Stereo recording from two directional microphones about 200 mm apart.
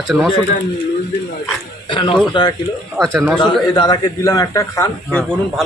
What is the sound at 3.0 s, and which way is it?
Speech, centre (ahead or behind).